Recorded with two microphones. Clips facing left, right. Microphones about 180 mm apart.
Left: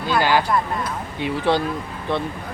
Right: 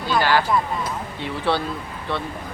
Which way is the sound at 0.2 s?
15° left (ahead or behind).